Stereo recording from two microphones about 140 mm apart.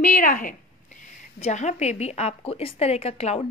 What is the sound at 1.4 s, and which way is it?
A woman's voice, 55° left (ahead or behind).